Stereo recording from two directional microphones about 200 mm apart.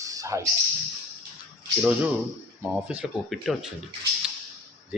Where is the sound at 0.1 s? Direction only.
15° right (ahead or behind).